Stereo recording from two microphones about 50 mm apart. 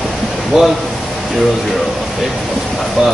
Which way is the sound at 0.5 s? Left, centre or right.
Centre.